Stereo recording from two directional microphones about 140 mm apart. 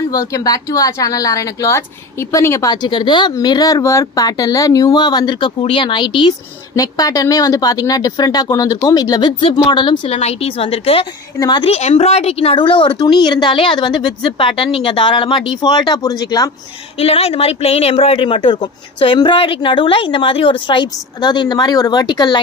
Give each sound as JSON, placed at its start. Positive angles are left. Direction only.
{"t": 0.1, "sound": "speech", "side_deg": 25}
{"t": 10.0, "sound": "a woman's voice", "side_deg": 45}
{"t": 11.3, "sound": "speech", "side_deg": 30}
{"t": 11.6, "sound": "speech", "side_deg": 45}
{"t": 17.0, "sound": "speech", "side_deg": 45}